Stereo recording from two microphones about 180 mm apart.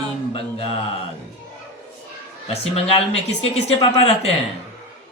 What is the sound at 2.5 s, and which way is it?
Speech, 35° left (ahead or behind).